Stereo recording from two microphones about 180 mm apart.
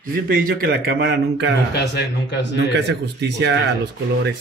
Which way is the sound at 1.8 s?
65° left (ahead or behind).